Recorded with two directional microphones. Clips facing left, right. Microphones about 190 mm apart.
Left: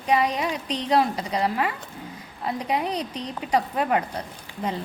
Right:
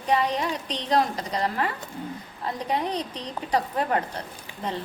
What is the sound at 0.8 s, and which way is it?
A woman's voice, 10° left (ahead or behind).